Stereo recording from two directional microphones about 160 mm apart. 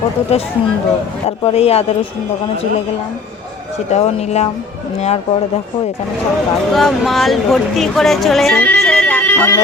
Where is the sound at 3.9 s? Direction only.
40° left (ahead or behind).